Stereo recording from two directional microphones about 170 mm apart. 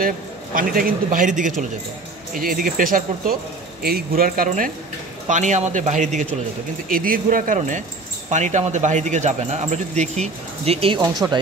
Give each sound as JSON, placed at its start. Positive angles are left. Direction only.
{"t": 0.6, "sound": "speech", "side_deg": -55}
{"t": 6.9, "sound": "speech", "side_deg": -55}